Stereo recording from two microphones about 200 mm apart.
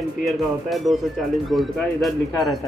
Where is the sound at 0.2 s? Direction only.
Centre (ahead or behind).